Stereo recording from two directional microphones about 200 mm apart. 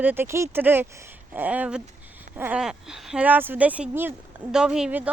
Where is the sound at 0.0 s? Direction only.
10° right (ahead or behind).